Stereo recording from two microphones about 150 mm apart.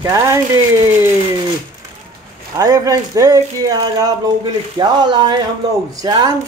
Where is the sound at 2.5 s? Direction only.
25° right (ahead or behind).